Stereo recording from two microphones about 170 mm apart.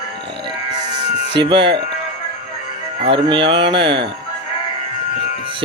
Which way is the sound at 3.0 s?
30° right (ahead or behind).